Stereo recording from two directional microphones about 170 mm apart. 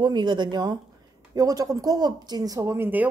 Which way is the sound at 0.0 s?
25° right (ahead or behind).